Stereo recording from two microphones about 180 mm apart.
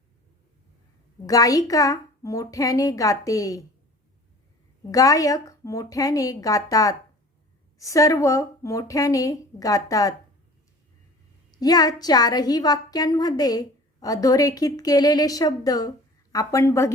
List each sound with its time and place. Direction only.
1.3 s a woman's voice: 20° left (ahead or behind)
4.9 s a woman's voice: 20° left (ahead or behind)
11.5 s a woman's voice: 20° left (ahead or behind)